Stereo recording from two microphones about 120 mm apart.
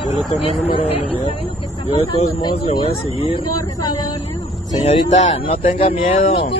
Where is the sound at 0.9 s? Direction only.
55° left (ahead or behind).